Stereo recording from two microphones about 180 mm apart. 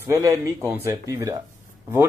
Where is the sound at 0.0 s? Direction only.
15° right (ahead or behind).